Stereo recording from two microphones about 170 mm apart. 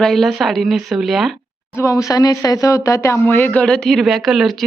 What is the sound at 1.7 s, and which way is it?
Speech, 15° left (ahead or behind).